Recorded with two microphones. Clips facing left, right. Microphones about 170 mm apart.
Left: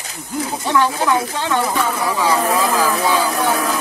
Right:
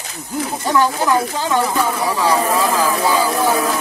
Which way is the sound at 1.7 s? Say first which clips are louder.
Right 1 dB; 10° right (ahead or behind).